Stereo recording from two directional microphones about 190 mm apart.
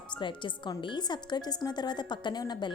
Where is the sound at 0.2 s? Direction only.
25° left (ahead or behind).